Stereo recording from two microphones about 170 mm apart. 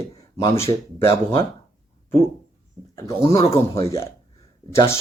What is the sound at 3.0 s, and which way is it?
Speech, 20° left (ahead or behind).